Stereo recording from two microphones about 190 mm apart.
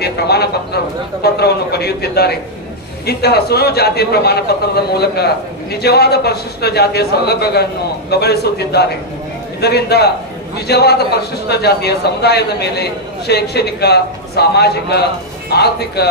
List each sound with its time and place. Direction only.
0.0 s a man's voice: 55° left (ahead or behind)